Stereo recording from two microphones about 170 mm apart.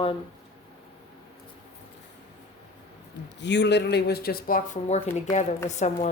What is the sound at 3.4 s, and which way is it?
Speech, 90° left.